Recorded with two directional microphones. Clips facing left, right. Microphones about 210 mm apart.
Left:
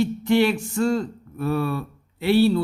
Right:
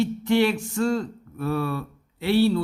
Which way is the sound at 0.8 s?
15° left (ahead or behind).